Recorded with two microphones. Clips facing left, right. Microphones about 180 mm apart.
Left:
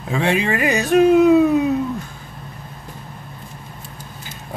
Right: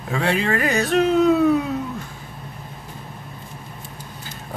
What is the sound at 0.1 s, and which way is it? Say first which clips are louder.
Speech: left 2 dB; 20° left (ahead or behind).